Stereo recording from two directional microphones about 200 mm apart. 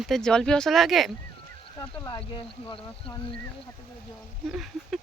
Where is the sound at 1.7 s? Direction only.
15° left (ahead or behind).